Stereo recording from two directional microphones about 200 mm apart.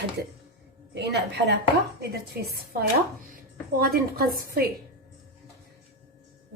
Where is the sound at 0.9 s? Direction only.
55° right (ahead or behind).